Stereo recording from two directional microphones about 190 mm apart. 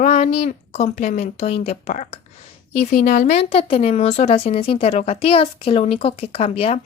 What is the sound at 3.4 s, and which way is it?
Speech, 30° left (ahead or behind).